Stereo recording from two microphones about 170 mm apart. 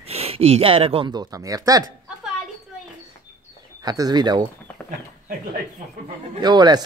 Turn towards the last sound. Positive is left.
turn(degrees=-25)  # may be behind; listen again after turning